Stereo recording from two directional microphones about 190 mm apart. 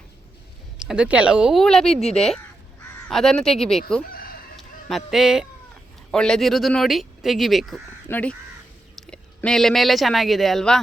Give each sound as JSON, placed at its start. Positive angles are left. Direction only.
{"t": 0.9, "sound": "speech", "side_deg": -5}
{"t": 4.1, "sound": "chicken", "side_deg": 50}
{"t": 4.9, "sound": "speech", "side_deg": 0}